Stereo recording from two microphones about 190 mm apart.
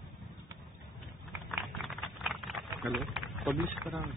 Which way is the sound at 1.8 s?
Centre (ahead or behind).